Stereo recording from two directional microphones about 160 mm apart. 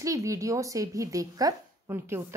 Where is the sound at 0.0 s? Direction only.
20° right (ahead or behind).